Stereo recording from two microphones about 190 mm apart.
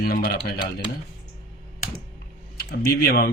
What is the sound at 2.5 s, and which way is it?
Speech, 55° left (ahead or behind).